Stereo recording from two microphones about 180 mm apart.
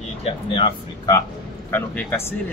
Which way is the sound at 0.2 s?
25° left (ahead or behind).